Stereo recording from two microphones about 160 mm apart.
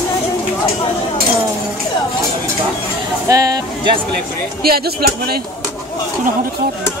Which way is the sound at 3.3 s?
20° right (ahead or behind).